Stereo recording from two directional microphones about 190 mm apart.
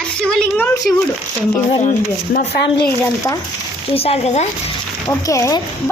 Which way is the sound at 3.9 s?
30° left (ahead or behind).